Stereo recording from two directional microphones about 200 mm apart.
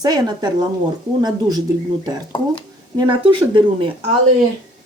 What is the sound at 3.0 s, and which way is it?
Speech, 25° right (ahead or behind).